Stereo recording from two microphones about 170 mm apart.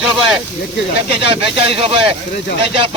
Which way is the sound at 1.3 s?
35° right (ahead or behind).